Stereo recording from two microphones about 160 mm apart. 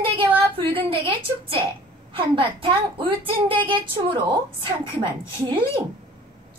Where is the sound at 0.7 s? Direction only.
35° right (ahead or behind).